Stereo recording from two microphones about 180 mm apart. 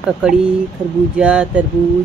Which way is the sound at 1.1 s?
5° right (ahead or behind).